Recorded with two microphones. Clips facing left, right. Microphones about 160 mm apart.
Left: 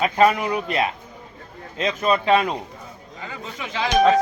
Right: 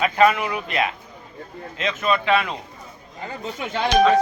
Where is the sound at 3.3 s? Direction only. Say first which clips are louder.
Right 4 dB; 55° right (ahead or behind).